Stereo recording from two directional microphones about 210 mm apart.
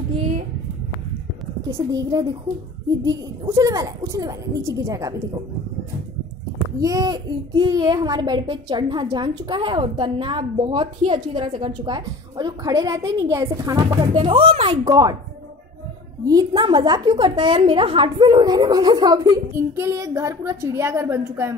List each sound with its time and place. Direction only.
1.7 s a woman's voice: 15° right (ahead or behind)
6.8 s a child's voice: 15° right (ahead or behind)
16.3 s a child's voice: 20° right (ahead or behind)